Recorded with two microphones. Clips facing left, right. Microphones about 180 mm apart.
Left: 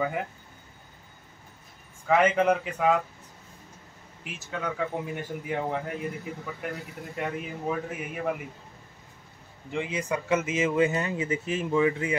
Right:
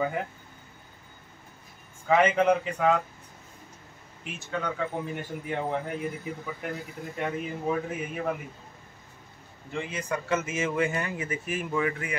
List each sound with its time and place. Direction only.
0.0 s speech: 5° left (ahead or behind)
2.0 s speech: centre (ahead or behind)
4.2 s speech: 5° left (ahead or behind)
9.7 s speech: 15° left (ahead or behind)